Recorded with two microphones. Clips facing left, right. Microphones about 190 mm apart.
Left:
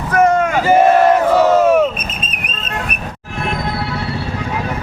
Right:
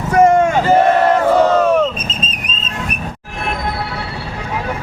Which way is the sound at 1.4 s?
10° left (ahead or behind).